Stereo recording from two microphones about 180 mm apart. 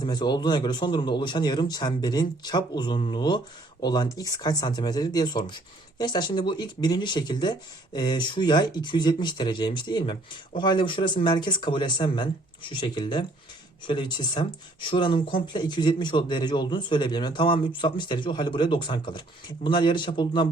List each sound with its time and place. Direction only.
0.0 s a man's voice: 25° left (ahead or behind)